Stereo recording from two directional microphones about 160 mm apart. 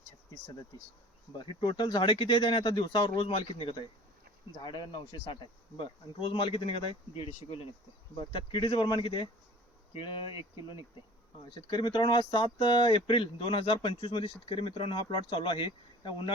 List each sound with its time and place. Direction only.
1.4 s speech: 30° left (ahead or behind)
11.4 s speech: 30° left (ahead or behind)